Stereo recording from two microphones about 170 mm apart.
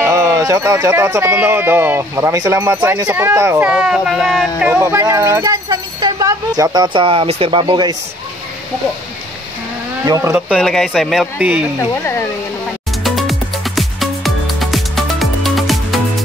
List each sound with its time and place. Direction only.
0.0 s speech: 20° right (ahead or behind); by 7.6 s 35° right (ahead or behind)
7.6 s speech: 25° right (ahead or behind)
10.0 s speech: 20° right (ahead or behind)
10.5 s speech: centre (ahead or behind)
11.9 s speech: 15° left (ahead or behind)
13.0 s music: centre (ahead or behind)